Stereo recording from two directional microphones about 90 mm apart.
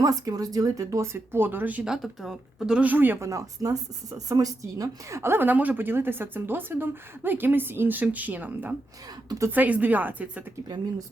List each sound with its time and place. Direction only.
0.0 s speech: 45° right (ahead or behind); by 1.9 s 15° right (ahead or behind)
1.9 s speech: centre (ahead or behind)
2.8 s a woman's voice: 20° right (ahead or behind)
3.2 s a woman's voice: 40° right (ahead or behind); by 10.4 s 20° right (ahead or behind)